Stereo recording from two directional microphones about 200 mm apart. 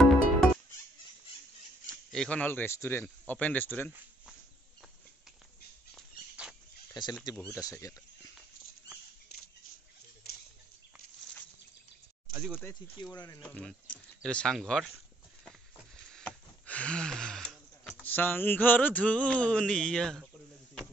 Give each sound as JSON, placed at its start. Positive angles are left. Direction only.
{"t": 0.0, "sound": "music", "side_deg": 0}
{"t": 2.1, "sound": "a man's voice", "side_deg": 5}
{"t": 5.9, "sound": "a sound", "side_deg": -5}
{"t": 6.9, "sound": "speech", "side_deg": 20}
{"t": 7.3, "sound": "a man's voice", "side_deg": 5}
{"t": 7.6, "sound": "a man's voice", "side_deg": 15}
{"t": 12.3, "sound": "speech", "side_deg": -10}
{"t": 12.6, "sound": "a man's voice", "side_deg": 10}
{"t": 13.0, "sound": "speech", "side_deg": 20}
{"t": 13.4, "sound": "speech", "side_deg": 5}
{"t": 16.1, "sound": "speech", "side_deg": 5}